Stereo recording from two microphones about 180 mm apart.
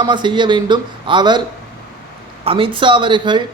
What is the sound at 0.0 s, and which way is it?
Speech, 25° right (ahead or behind).